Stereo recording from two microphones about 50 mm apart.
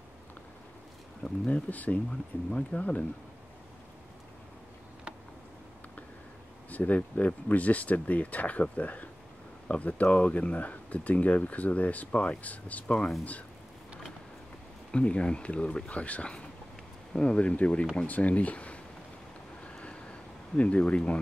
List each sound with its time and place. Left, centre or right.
1.2 s speech: left
6.7 s speech: left
12.8 s speech: centre
14.9 s speech: left
19.6 s vehicle: left
20.5 s speech: left